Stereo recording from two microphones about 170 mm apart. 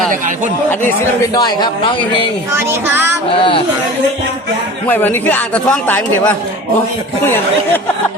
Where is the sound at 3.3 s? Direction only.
30° left (ahead or behind).